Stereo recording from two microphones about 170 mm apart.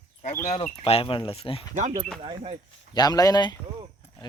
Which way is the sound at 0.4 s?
40° left (ahead or behind).